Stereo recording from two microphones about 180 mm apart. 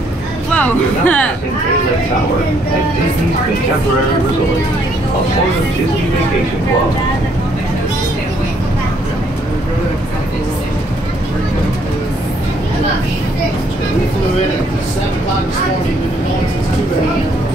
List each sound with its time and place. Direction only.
0.5 s speech: 10° left (ahead or behind)